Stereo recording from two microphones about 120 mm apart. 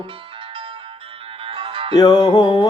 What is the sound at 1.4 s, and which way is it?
Music, 50° right (ahead or behind).